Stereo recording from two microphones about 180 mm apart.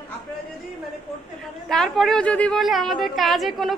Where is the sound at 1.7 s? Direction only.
Centre (ahead or behind).